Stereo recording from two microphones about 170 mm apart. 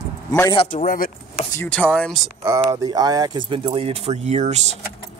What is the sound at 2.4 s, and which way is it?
Speech, 20° right (ahead or behind).